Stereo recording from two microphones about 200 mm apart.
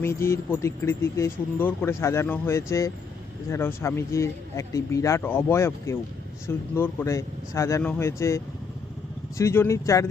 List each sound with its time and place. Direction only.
0.0 s a man's voice: 10° left (ahead or behind)
9.4 s a man's voice: 15° left (ahead or behind)